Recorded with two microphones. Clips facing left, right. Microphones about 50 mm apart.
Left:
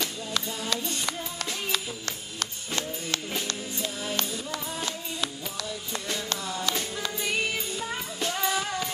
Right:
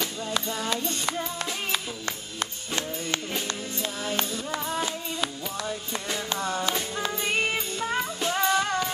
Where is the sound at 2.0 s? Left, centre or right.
Centre.